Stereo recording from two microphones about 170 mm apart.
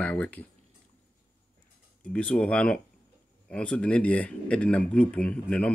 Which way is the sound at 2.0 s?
5° left (ahead or behind).